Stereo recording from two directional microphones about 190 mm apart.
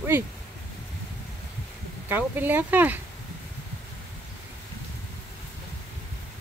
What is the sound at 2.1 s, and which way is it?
Speech, 10° right (ahead or behind).